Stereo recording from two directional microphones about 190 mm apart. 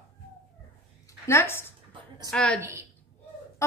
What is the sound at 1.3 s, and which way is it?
A woman's voice, 15° left (ahead or behind).